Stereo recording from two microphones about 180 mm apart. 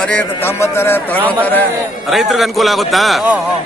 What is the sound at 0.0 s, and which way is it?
A man's voice, 10° left (ahead or behind).